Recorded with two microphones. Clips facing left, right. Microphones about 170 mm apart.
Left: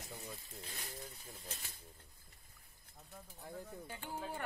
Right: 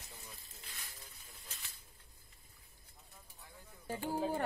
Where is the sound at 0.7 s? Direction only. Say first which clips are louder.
Left 4 dB; 35° left (ahead or behind).